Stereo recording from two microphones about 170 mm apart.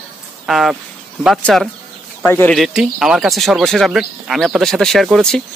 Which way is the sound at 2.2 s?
10° left (ahead or behind).